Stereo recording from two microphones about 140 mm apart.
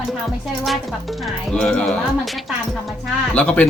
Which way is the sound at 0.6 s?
Centre (ahead or behind).